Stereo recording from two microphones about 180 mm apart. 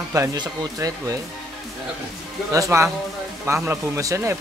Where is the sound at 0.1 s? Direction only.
20° right (ahead or behind).